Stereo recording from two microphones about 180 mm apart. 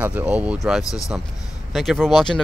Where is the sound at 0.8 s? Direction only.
20° left (ahead or behind).